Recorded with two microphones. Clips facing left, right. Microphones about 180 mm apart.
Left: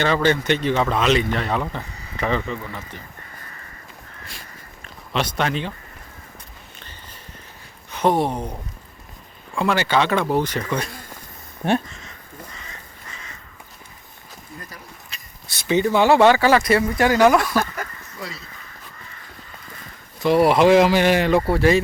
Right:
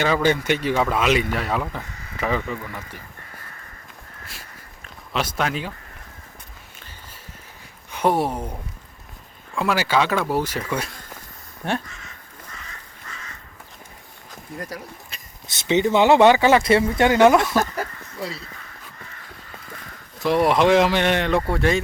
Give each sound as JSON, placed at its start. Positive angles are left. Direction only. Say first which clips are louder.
{"t": 0.0, "sound": "speech", "louder": "left 1 dB", "side_deg": -10}
{"t": 4.3, "sound": "a sound", "louder": "left 2 dB", "side_deg": -5}
{"t": 7.9, "sound": "speech", "louder": "left 1 dB", "side_deg": -10}
{"t": 9.6, "sound": "speech", "louder": "left 1 dB", "side_deg": -5}
{"t": 15.1, "sound": "a sound", "louder": "even", "side_deg": -50}
{"t": 15.4, "sound": "speech", "louder": "even", "side_deg": -20}
{"t": 17.6, "sound": "speech", "louder": "right 2 dB", "side_deg": -35}
{"t": 20.1, "sound": "speech", "louder": "left 3 dB", "side_deg": 0}